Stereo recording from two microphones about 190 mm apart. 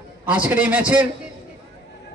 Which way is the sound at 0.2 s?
5° right (ahead or behind).